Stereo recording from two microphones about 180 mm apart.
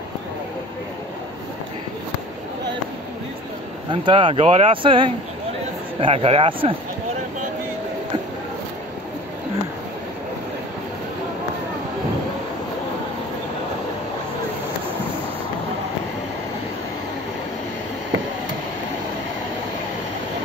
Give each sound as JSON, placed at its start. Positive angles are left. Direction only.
{"t": 3.9, "sound": "speech", "side_deg": -25}